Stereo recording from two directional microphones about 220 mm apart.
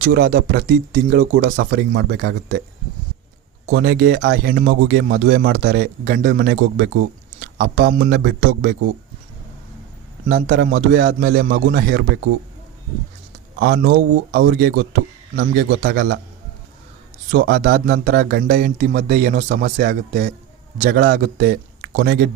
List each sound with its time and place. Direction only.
0.0 s speech: 45° right (ahead or behind)
3.7 s speech: 45° right (ahead or behind)
10.2 s speech: 40° right (ahead or behind)
13.6 s speech: 45° right (ahead or behind)
17.3 s speech: 40° right (ahead or behind)